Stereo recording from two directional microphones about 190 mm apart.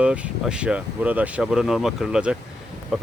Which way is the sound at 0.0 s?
5° right (ahead or behind).